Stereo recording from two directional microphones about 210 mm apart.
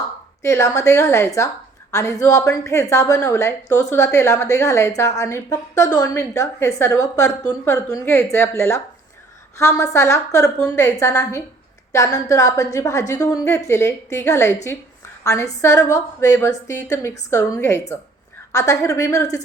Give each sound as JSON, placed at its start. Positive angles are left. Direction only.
{"t": 0.4, "sound": "a woman's voice", "side_deg": 15}